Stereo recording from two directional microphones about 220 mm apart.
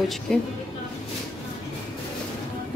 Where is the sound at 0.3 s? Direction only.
5° left (ahead or behind).